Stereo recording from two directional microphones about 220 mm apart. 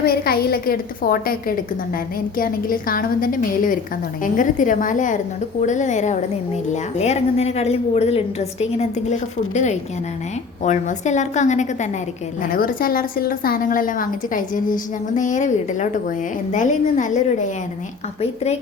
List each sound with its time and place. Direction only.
0.0 s a woman's voice: 45° left (ahead or behind)